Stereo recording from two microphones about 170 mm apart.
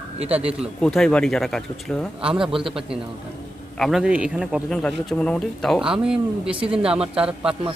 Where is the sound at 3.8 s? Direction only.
Centre (ahead or behind).